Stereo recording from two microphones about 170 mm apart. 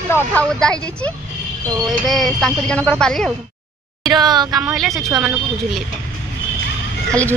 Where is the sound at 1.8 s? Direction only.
Centre (ahead or behind).